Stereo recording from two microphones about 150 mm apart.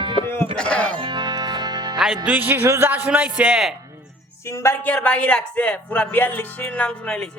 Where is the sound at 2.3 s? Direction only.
10° right (ahead or behind).